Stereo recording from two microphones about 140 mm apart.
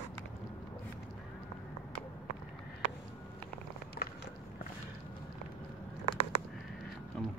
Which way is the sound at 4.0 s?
80° left.